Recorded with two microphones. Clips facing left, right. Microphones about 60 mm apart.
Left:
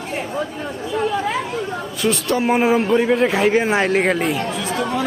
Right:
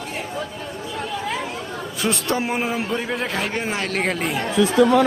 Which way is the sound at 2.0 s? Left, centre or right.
Right.